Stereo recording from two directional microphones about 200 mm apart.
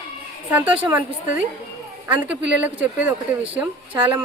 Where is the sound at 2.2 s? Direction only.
5° right (ahead or behind).